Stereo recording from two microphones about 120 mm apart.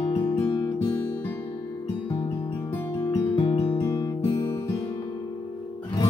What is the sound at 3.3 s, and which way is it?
Music, 45° left (ahead or behind).